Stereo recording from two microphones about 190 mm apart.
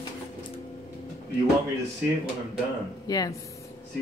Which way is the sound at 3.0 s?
20° left (ahead or behind).